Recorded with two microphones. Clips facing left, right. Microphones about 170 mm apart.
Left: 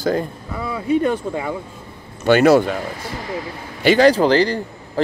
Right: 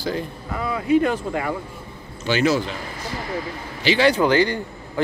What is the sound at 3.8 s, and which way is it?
Speech, 45° left (ahead or behind).